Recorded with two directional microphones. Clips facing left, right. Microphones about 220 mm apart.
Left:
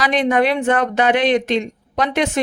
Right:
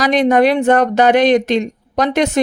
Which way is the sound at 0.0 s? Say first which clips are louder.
Right 5 dB; 40° right (ahead or behind).